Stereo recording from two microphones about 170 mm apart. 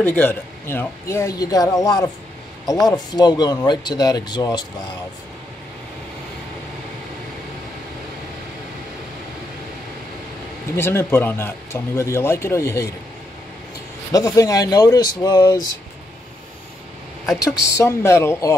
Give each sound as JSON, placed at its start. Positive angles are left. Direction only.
{"t": 0.0, "sound": "speech", "side_deg": 10}
{"t": 10.8, "sound": "speech", "side_deg": 15}
{"t": 14.1, "sound": "speech", "side_deg": 20}
{"t": 17.6, "sound": "speech", "side_deg": 15}